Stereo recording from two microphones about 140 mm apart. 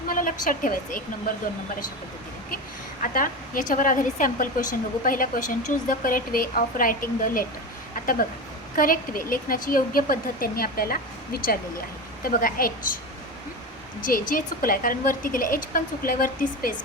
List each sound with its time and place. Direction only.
0.1 s a sound: 75° left (ahead or behind)
0.4 s a woman's voice: 75° left (ahead or behind)
3.0 s a woman's voice: 75° left (ahead or behind)
8.7 s a woman's voice: 85° left
14.0 s speech: 75° left (ahead or behind)